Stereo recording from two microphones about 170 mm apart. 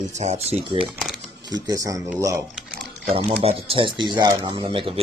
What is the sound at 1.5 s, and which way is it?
Speech, 20° right (ahead or behind).